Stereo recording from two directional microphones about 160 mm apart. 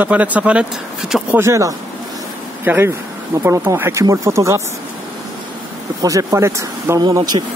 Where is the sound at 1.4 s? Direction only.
20° right (ahead or behind).